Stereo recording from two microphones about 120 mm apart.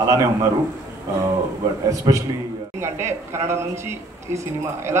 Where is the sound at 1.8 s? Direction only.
30° right (ahead or behind).